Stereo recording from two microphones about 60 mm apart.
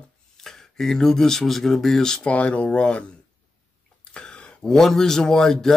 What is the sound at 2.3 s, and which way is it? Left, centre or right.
Speech, left.